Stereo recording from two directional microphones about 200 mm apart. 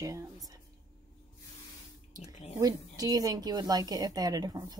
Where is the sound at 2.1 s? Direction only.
20° right (ahead or behind).